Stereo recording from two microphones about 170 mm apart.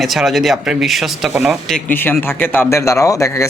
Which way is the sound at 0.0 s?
Centre (ahead or behind).